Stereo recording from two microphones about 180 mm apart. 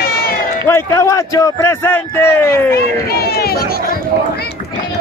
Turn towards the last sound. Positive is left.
turn(degrees=55)  # may be behind; listen again after turning